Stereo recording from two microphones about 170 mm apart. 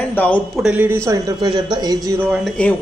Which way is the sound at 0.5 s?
10° right (ahead or behind).